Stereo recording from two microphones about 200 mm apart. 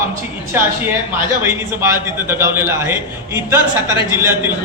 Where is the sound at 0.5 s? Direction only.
10° right (ahead or behind).